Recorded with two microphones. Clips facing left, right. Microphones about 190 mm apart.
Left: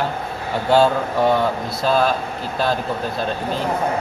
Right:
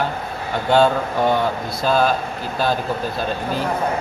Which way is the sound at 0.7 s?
5° left (ahead or behind).